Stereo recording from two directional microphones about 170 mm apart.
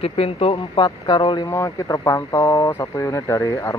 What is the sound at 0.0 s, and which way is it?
Speech, 35° left (ahead or behind).